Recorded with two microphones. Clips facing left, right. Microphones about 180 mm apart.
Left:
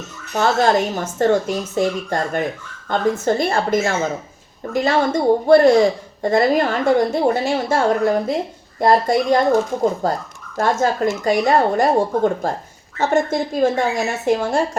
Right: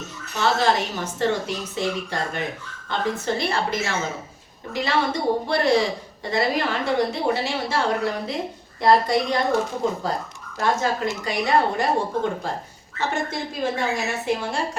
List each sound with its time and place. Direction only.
0.3 s a woman's voice: 45° left (ahead or behind)